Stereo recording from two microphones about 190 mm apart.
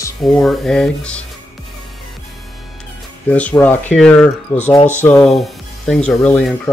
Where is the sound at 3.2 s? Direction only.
5° left (ahead or behind).